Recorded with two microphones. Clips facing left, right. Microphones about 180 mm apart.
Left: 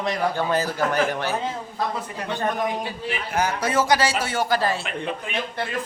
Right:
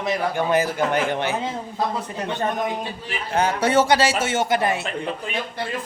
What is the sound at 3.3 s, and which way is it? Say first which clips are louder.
A man's voice: right 4 dB; 30° right (ahead or behind).